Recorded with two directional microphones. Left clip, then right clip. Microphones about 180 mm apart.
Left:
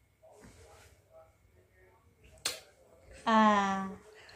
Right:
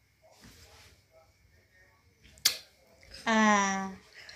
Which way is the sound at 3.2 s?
20° right (ahead or behind).